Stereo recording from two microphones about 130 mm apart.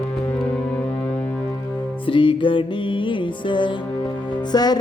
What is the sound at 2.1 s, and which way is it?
Music, 40° left (ahead or behind).